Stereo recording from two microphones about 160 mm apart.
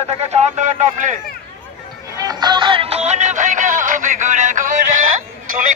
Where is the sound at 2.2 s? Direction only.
25° right (ahead or behind).